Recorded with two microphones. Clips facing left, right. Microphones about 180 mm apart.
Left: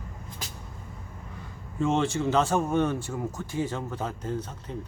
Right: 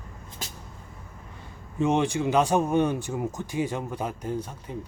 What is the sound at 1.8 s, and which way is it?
Speech, 15° right (ahead or behind).